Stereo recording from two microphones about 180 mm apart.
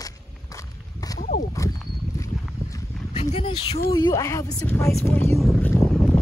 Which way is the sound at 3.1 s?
40° left (ahead or behind).